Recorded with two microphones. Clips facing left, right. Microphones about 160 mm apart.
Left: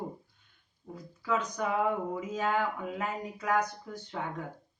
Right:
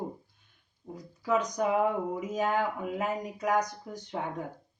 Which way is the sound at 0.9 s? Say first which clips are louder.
Right 3 dB; 15° right (ahead or behind).